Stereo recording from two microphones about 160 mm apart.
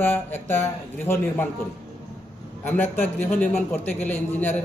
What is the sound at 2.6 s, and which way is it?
Speech, 10° left (ahead or behind).